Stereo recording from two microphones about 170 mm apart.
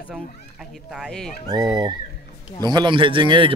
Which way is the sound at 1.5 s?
25° right (ahead or behind).